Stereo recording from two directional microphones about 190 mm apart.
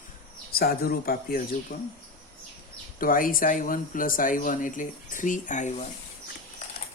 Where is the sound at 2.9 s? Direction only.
45° left (ahead or behind).